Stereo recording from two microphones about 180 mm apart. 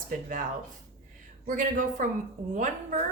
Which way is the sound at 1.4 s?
45° right (ahead or behind).